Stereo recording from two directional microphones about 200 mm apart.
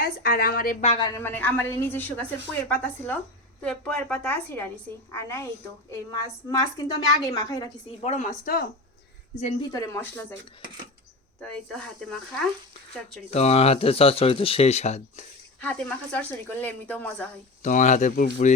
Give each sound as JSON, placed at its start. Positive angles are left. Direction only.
{"t": 0.0, "sound": "a woman's voice", "side_deg": 50}
{"t": 0.9, "sound": "a woman's voice", "side_deg": 20}
{"t": 6.5, "sound": "a woman's voice", "side_deg": 15}
{"t": 8.0, "sound": "speech", "side_deg": 35}
{"t": 9.7, "sound": "a woman's voice", "side_deg": 15}
{"t": 11.3, "sound": "speech", "side_deg": 5}
{"t": 13.3, "sound": "speech", "side_deg": 30}
{"t": 15.6, "sound": "a woman's voice", "side_deg": 5}
{"t": 17.6, "sound": "speech", "side_deg": 40}